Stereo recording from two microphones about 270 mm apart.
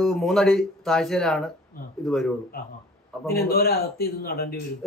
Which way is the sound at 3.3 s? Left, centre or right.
Left.